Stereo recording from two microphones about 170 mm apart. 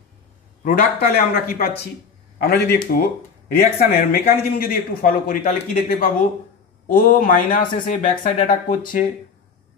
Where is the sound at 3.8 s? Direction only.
60° left (ahead or behind).